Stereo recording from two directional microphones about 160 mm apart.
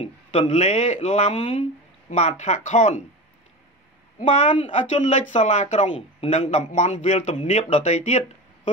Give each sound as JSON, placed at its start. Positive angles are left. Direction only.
{"t": 0.0, "sound": "a man's voice", "side_deg": 40}
{"t": 4.3, "sound": "speech", "side_deg": 50}